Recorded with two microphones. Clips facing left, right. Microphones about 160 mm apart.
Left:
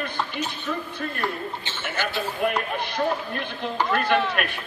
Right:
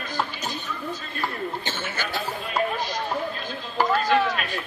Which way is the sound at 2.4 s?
60° left (ahead or behind).